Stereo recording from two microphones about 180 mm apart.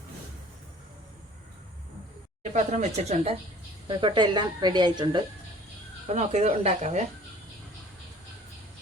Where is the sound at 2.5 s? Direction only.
40° right (ahead or behind).